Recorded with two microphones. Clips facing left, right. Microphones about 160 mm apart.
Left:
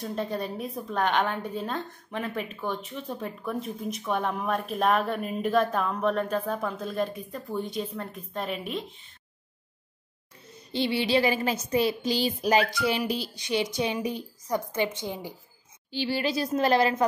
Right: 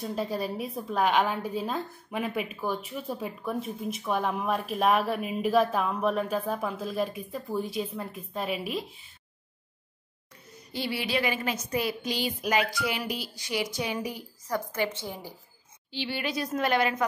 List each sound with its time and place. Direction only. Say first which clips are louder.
0.0 s a woman's voice: even; 5° right (ahead or behind)
10.7 s a woman's voice: left 5 dB; 25° left (ahead or behind)
15.9 s speech: left 4 dB; 40° left (ahead or behind)